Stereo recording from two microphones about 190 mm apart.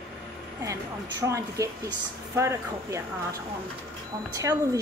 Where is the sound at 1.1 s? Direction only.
15° right (ahead or behind).